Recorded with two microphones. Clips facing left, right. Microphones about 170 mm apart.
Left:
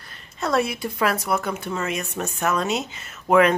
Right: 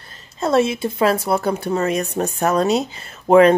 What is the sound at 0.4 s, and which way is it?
Speech, 25° right (ahead or behind).